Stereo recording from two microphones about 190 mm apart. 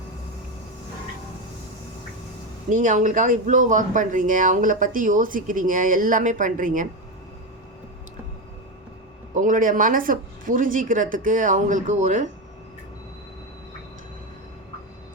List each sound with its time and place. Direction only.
2.6 s speech: 40° right (ahead or behind)
9.3 s speech: 40° right (ahead or behind)